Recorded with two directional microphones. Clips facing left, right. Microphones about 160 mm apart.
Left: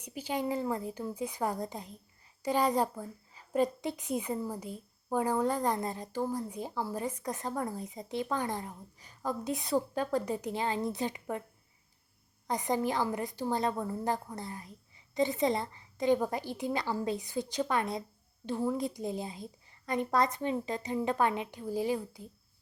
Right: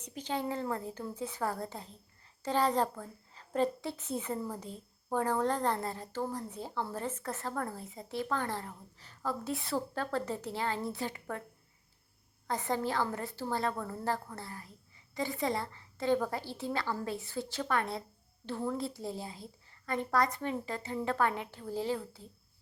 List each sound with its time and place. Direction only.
0.0 s speech: 10° left (ahead or behind)
12.5 s speech: 15° left (ahead or behind)